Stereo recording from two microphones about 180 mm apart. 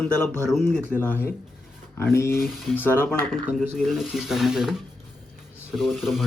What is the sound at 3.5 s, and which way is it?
Speech, centre (ahead or behind).